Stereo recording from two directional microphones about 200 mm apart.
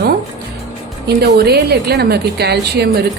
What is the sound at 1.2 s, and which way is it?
A woman's voice, 55° right (ahead or behind).